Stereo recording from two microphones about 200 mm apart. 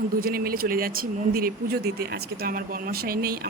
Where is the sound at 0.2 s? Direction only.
50° right (ahead or behind).